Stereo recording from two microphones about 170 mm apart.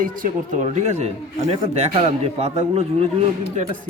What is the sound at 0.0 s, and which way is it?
A man's voice, 50° right (ahead or behind).